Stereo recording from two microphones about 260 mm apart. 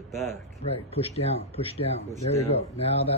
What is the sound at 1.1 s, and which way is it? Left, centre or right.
Speech, left.